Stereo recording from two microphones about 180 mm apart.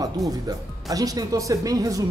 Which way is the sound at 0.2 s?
Centre (ahead or behind).